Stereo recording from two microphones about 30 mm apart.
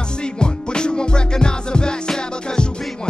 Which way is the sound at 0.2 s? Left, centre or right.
Left.